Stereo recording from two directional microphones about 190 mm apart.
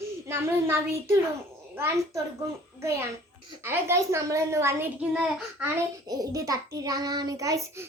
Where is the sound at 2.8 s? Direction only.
15° right (ahead or behind).